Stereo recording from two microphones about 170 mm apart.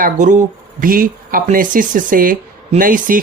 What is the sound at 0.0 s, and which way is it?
Speech, 45° right (ahead or behind).